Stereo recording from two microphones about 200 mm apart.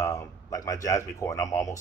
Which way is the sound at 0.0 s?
15° left (ahead or behind).